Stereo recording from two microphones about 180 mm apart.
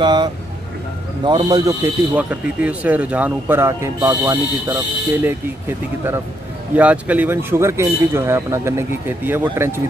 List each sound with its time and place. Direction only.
0.0 s speech: 25° right (ahead or behind)
6.7 s speech: 10° right (ahead or behind)